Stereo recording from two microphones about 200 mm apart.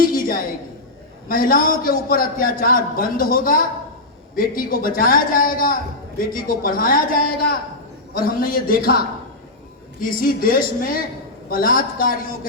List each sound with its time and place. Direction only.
0.0 s a sound: 45° left (ahead or behind)
1.3 s a man's voice: 45° left (ahead or behind)
10.0 s a man's voice: 45° left (ahead or behind)